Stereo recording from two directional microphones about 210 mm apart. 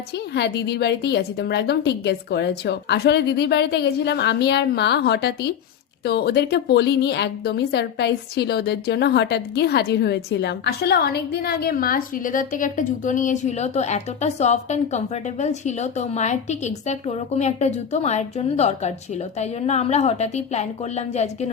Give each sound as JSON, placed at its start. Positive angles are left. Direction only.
{"t": 0.3, "sound": "a woman's voice", "side_deg": 55}